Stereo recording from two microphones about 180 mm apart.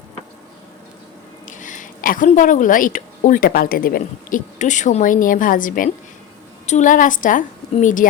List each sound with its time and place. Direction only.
1.5 s a woman's voice: 45° left (ahead or behind)